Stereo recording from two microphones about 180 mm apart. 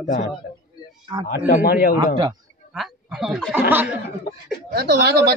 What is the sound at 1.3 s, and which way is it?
Speech, 60° left (ahead or behind).